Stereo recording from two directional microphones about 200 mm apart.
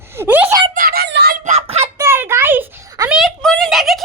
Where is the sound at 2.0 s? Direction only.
10° right (ahead or behind).